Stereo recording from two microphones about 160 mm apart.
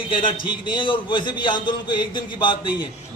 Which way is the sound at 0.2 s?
30° left (ahead or behind).